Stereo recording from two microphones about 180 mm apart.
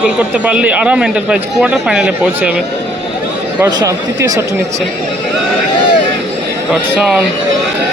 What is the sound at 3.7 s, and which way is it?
Speech, 20° right (ahead or behind).